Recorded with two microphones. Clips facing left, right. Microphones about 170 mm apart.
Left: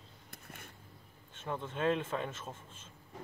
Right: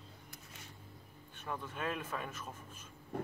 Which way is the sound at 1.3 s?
25° left (ahead or behind).